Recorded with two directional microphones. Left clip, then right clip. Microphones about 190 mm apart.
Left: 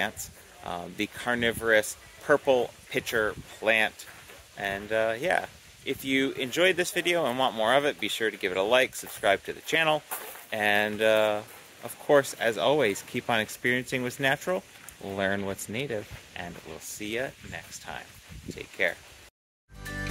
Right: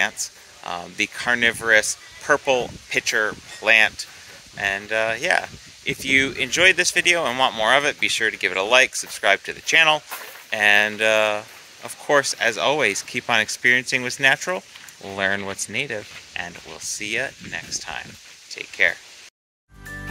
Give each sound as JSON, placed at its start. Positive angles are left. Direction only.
{"t": 0.0, "sound": "speech", "side_deg": 0}